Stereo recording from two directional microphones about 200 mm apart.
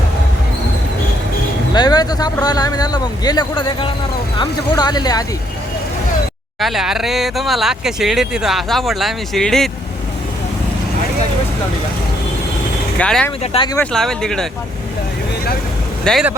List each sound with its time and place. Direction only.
1.7 s speech: 20° left (ahead or behind)
6.6 s speech: centre (ahead or behind)
13.0 s speech: 5° left (ahead or behind)
13.4 s speech: 30° left (ahead or behind)
13.7 s speech: centre (ahead or behind)
16.0 s speech: centre (ahead or behind)